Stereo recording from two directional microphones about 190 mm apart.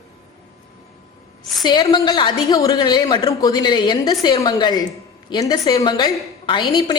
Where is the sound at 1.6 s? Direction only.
25° left (ahead or behind).